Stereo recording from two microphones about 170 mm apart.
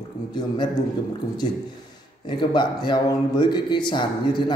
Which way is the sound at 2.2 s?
25° left (ahead or behind).